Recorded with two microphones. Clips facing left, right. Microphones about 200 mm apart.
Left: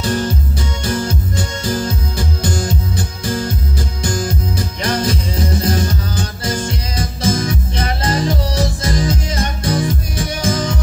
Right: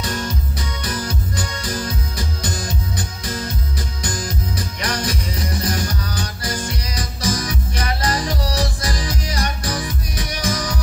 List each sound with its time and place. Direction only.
0.0 s music: 30° left (ahead or behind)